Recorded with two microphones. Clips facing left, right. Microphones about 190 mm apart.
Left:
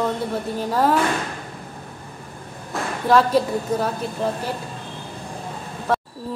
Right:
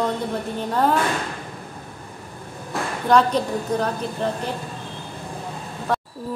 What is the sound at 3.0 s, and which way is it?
Speech, 5° left (ahead or behind).